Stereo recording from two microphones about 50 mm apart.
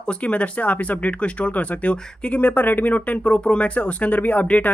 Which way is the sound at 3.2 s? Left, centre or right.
Centre.